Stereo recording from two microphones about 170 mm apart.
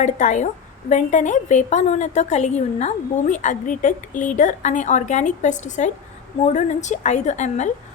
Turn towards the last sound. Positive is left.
turn(degrees=45)  # may be behind; listen again after turning